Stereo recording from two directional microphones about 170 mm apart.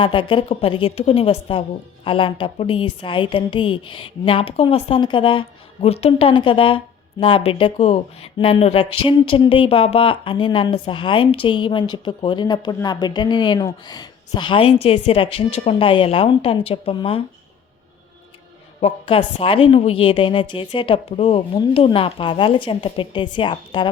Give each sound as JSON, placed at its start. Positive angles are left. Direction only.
{"t": 0.0, "sound": "a woman's voice", "side_deg": 30}
{"t": 18.8, "sound": "a woman's voice", "side_deg": 35}